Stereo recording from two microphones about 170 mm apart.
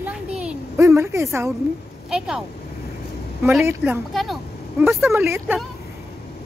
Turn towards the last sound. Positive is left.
turn(degrees=-15)  # may be behind; listen again after turning